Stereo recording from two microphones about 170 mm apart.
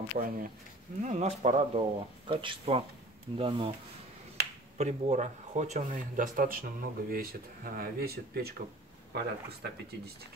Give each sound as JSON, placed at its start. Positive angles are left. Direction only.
{"t": 0.2, "sound": "speech", "side_deg": -50}
{"t": 4.4, "sound": "finger snapping", "side_deg": -75}
{"t": 4.7, "sound": "speech", "side_deg": -45}